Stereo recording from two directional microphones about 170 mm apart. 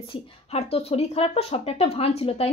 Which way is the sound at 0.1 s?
35° left (ahead or behind).